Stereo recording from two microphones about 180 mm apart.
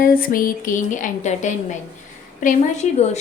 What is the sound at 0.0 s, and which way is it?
Speech, 50° left (ahead or behind).